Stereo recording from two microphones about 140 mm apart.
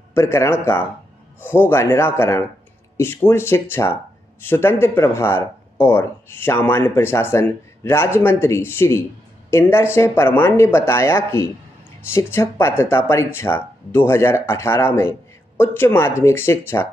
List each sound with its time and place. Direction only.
0.1 s speech: 20° left (ahead or behind)